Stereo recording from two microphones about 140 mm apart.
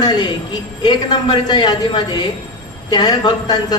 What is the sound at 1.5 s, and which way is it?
A man's voice, 35° left (ahead or behind).